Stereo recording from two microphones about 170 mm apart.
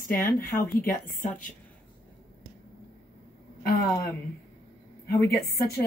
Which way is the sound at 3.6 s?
60° left (ahead or behind).